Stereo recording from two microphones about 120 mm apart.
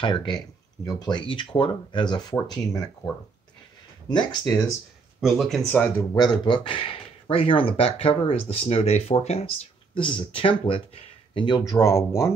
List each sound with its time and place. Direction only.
0.0 s speech: 40° left (ahead or behind)
4.1 s speech: 40° left (ahead or behind)
5.2 s speech: centre (ahead or behind)
5.7 s speech: 15° left (ahead or behind)
6.1 s speech: 40° left (ahead or behind); by 9.5 s 65° left (ahead or behind)
9.9 s speech: 45° left (ahead or behind)
11.8 s speech: 25° left (ahead or behind)